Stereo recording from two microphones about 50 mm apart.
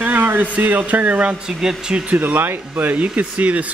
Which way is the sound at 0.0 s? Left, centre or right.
Right.